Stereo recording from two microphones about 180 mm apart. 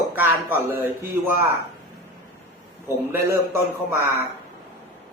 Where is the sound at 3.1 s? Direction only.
15° right (ahead or behind).